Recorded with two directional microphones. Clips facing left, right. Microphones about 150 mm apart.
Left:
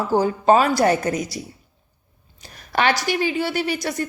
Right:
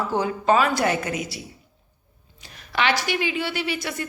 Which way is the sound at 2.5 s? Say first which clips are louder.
Left 3 dB; 45° left (ahead or behind).